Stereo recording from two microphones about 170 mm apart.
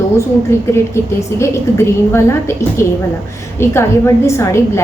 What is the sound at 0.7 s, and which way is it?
A woman's voice, 15° left (ahead or behind).